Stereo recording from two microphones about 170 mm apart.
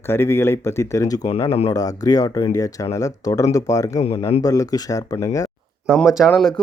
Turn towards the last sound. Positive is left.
turn(degrees=0)  # may be behind; listen again after turning